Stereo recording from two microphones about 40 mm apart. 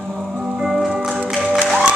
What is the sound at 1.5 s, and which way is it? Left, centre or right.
Music, right.